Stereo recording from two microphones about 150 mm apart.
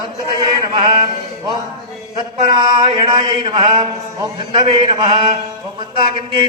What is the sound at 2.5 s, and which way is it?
A man's voice, 30° right (ahead or behind).